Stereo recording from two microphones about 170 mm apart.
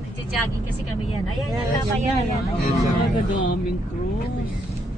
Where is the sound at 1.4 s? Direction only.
Centre (ahead or behind).